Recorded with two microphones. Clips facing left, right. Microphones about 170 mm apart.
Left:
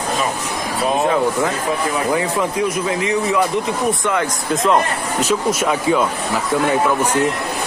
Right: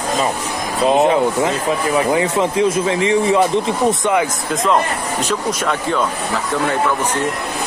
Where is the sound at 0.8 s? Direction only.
20° right (ahead or behind).